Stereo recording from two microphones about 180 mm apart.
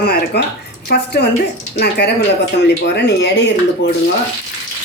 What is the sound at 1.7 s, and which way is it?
Speech, 65° left (ahead or behind).